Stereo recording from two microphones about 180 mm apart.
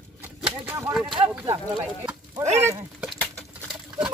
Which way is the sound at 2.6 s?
15° right (ahead or behind).